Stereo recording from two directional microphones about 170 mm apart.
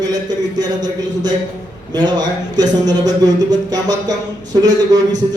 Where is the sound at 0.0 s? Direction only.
25° right (ahead or behind).